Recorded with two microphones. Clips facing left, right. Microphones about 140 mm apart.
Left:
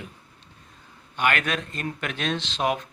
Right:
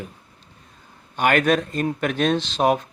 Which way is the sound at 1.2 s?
45° right (ahead or behind).